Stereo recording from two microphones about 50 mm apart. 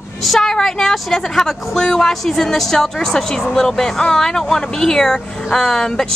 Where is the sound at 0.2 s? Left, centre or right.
Centre.